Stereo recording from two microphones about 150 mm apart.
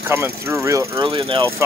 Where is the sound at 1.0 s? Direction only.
30° right (ahead or behind).